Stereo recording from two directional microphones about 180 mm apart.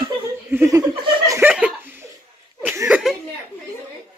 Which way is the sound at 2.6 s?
10° right (ahead or behind).